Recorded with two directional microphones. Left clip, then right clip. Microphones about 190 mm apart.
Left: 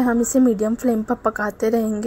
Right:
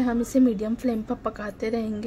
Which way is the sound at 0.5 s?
15° left (ahead or behind).